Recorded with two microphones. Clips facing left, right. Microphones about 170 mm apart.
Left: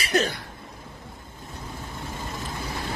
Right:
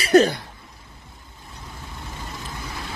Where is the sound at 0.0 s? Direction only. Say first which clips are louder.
Right 9 dB; 40° right (ahead or behind).